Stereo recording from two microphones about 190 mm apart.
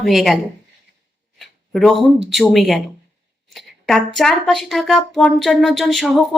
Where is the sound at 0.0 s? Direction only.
Centre (ahead or behind).